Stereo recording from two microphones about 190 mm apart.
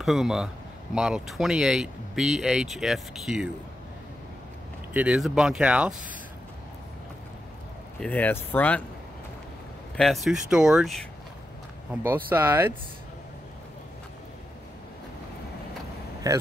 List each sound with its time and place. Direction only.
0.0 s speech: centre (ahead or behind)
4.9 s speech: 5° right (ahead or behind)
8.0 s speech: 10° left (ahead or behind)
9.9 s speech: centre (ahead or behind)
11.9 s speech: 10° right (ahead or behind)
16.3 s speech: 20° right (ahead or behind)